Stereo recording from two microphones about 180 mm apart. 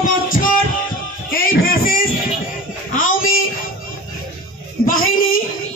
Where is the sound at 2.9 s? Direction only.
50° left (ahead or behind).